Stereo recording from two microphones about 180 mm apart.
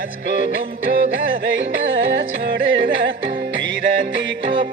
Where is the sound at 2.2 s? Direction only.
70° right (ahead or behind); by 4.3 s 90° right.